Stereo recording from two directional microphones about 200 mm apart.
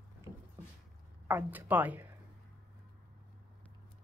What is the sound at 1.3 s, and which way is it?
Speech, 10° right (ahead or behind).